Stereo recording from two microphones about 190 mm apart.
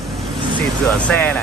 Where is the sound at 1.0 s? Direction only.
5° left (ahead or behind).